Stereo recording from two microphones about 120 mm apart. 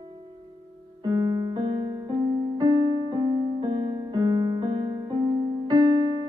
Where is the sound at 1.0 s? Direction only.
35° right (ahead or behind).